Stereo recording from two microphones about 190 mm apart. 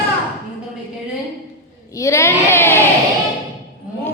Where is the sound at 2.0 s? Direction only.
15° left (ahead or behind).